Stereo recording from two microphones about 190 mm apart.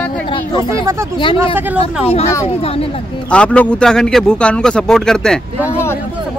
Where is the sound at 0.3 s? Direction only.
20° left (ahead or behind).